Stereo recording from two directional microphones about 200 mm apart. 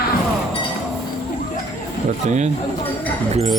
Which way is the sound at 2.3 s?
35° right (ahead or behind).